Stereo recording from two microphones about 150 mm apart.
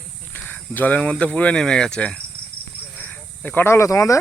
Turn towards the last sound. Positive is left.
turn(degrees=20)  # may be behind; listen again after turning